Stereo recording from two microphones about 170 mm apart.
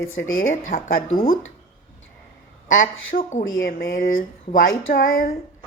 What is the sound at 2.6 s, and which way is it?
A woman's voice, 50° left (ahead or behind).